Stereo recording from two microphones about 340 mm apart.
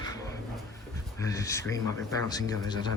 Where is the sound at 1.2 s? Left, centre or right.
Centre.